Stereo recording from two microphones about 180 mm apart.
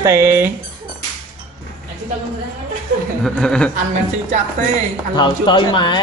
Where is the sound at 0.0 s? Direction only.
15° right (ahead or behind).